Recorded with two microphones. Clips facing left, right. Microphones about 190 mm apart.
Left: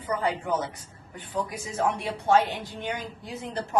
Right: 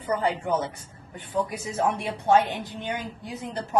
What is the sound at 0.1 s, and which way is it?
Speech, 25° right (ahead or behind).